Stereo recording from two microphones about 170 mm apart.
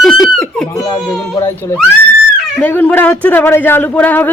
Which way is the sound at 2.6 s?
10° left (ahead or behind).